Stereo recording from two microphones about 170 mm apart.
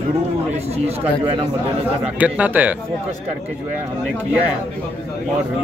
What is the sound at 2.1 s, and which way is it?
Speech, 10° right (ahead or behind).